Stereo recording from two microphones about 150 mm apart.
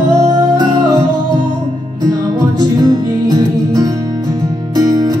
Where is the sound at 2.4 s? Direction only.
25° right (ahead or behind).